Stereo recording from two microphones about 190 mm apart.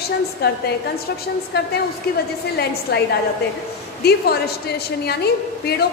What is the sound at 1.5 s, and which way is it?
A woman's voice, 55° left (ahead or behind).